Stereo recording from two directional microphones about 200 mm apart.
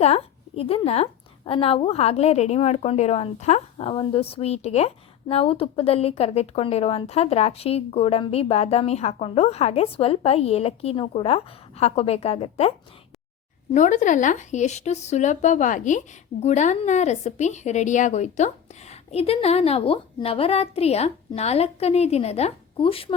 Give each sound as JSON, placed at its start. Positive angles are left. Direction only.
{"t": 0.0, "sound": "a woman's voice", "side_deg": 30}
{"t": 13.7, "sound": "a woman's voice", "side_deg": 40}